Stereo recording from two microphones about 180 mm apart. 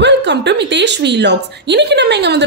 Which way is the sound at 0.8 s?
70° right (ahead or behind).